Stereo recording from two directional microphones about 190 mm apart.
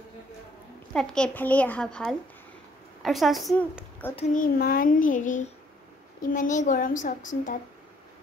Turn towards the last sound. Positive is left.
turn(degrees=40)  # may be behind; listen again after turning